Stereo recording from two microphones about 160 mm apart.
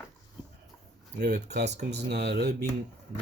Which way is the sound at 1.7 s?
90° right.